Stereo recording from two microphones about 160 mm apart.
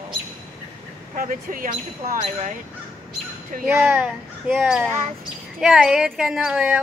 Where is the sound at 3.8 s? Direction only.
10° right (ahead or behind).